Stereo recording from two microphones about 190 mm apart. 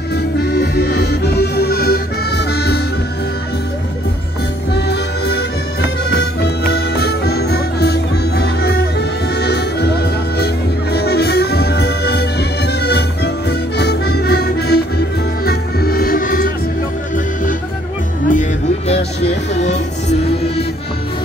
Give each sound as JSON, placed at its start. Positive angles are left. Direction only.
{"t": 0.1, "sound": "accordion", "side_deg": 55}
{"t": 4.7, "sound": "music", "side_deg": 60}
{"t": 18.3, "sound": "music", "side_deg": 40}